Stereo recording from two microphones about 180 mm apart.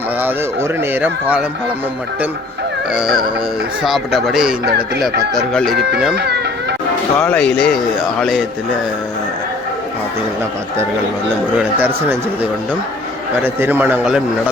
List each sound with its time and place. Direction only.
0.2 s speech: 10° right (ahead or behind)
2.9 s speech: 5° right (ahead or behind)
6.1 s children playing: 65° right (ahead or behind)
7.2 s speech: 10° left (ahead or behind)
11.8 s speech: 10° right (ahead or behind)